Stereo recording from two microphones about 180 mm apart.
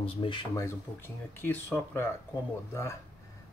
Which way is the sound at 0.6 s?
15° left (ahead or behind).